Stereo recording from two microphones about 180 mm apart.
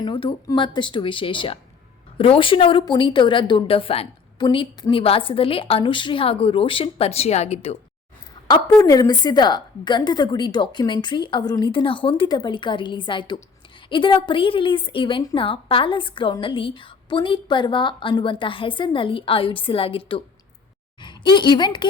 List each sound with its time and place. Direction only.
0.0 s a woman's voice: 30° left (ahead or behind)
8.6 s a woman's voice: 20° left (ahead or behind)